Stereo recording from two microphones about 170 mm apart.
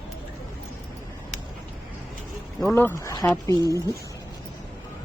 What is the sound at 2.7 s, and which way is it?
Speech, 15° left (ahead or behind).